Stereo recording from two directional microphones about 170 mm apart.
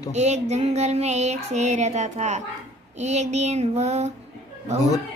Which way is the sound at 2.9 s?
40° right (ahead or behind).